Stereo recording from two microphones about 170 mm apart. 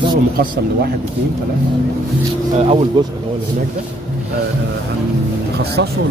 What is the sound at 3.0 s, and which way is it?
Speech, 25° right (ahead or behind).